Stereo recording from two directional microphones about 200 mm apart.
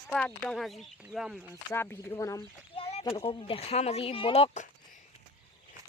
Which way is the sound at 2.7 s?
30° left (ahead or behind).